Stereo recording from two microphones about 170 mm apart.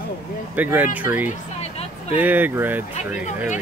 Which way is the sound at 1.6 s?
40° left (ahead or behind).